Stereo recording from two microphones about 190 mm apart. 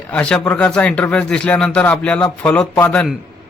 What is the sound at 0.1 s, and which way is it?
Speech, 5° left (ahead or behind).